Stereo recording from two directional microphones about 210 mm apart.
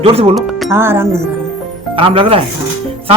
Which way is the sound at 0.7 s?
10° right (ahead or behind).